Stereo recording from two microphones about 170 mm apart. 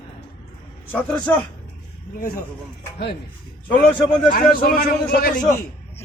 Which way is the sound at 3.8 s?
5° left (ahead or behind).